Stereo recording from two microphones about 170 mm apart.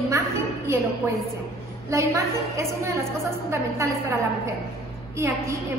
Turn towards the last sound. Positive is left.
turn(degrees=-15)  # may be behind; listen again after turning